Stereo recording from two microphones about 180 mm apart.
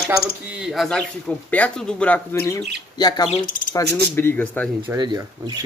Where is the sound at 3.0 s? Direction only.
20° left (ahead or behind).